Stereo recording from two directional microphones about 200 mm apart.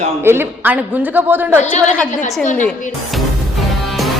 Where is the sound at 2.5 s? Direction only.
10° left (ahead or behind).